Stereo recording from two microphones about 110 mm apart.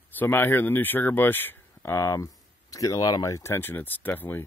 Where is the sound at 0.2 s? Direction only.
20° left (ahead or behind).